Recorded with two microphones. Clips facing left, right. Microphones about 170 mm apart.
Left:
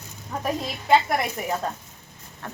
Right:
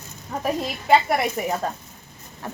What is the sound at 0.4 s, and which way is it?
A woman's voice, 5° right (ahead or behind).